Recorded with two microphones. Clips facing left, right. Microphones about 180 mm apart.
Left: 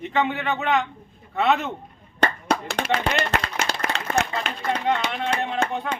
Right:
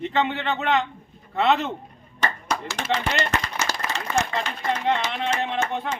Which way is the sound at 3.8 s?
60° left (ahead or behind).